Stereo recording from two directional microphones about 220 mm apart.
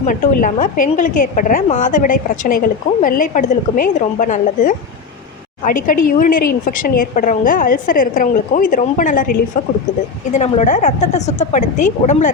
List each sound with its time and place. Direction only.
0.0 s a woman's voice: 35° left (ahead or behind)